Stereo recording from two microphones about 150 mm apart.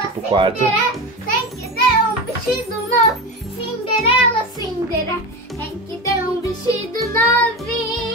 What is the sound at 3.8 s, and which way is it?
Music, 40° left (ahead or behind).